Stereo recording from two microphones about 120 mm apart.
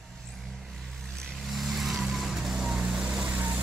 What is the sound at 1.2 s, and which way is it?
Vehicle, centre (ahead or behind).